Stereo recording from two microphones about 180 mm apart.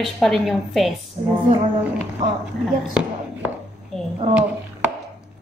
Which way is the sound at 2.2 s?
25° right (ahead or behind).